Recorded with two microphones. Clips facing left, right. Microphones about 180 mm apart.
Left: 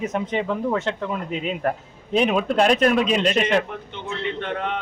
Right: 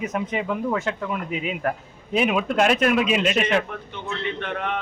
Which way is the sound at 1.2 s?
5° right (ahead or behind).